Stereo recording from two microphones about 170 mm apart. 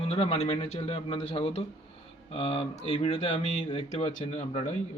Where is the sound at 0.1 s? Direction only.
35° left (ahead or behind).